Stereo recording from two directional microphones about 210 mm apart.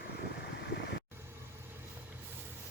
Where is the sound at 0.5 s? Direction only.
50° left (ahead or behind).